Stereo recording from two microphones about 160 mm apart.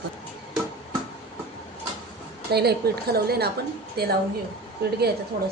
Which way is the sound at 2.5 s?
85° right.